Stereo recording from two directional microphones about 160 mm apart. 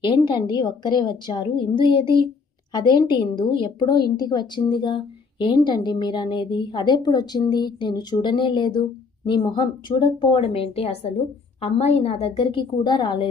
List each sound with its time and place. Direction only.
0.0 s a woman's voice: 30° left (ahead or behind)